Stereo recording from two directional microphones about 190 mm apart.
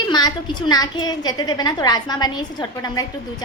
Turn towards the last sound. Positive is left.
turn(degrees=20)  # may be behind; listen again after turning